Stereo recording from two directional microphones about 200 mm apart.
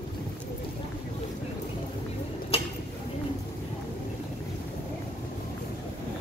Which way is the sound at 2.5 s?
30° left (ahead or behind).